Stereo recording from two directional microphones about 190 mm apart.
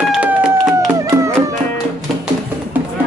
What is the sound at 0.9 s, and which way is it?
Music, 15° right (ahead or behind).